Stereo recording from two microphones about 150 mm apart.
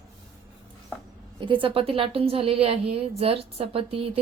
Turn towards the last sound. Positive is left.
turn(degrees=-40)  # may be behind; listen again after turning